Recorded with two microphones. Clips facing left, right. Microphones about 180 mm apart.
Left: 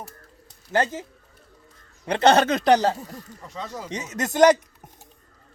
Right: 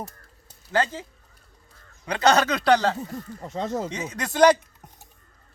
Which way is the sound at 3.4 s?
45° right (ahead or behind).